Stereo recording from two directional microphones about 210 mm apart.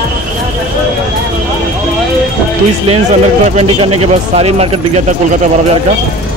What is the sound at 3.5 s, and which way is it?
A man's voice, 30° right (ahead or behind).